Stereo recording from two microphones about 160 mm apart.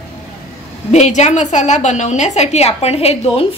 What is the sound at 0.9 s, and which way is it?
A woman's voice, 45° left (ahead or behind).